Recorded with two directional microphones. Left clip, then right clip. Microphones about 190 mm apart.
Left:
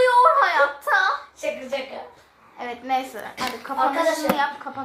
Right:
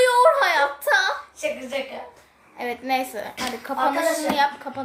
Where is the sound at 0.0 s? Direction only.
25° right (ahead or behind).